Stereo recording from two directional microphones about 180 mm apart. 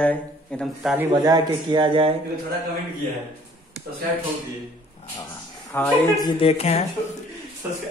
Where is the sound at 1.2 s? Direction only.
20° right (ahead or behind).